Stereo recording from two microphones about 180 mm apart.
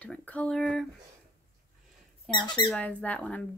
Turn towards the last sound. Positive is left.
turn(degrees=10)  # may be behind; listen again after turning